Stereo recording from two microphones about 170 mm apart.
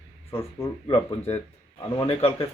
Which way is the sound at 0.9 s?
35° left (ahead or behind).